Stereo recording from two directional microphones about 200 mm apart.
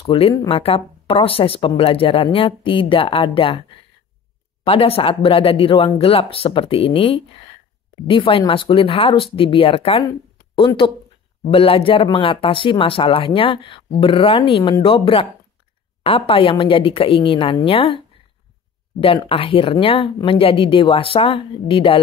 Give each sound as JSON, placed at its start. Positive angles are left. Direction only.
{"t": 0.0, "sound": "speech", "side_deg": 25}
{"t": 4.6, "sound": "speech", "side_deg": 30}
{"t": 10.0, "sound": "a sound", "side_deg": 25}
{"t": 11.5, "sound": "speech", "side_deg": 30}